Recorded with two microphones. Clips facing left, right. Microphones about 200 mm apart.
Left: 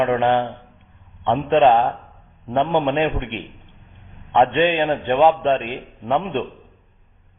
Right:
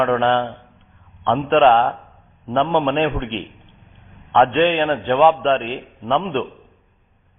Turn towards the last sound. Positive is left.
turn(degrees=15)  # may be behind; listen again after turning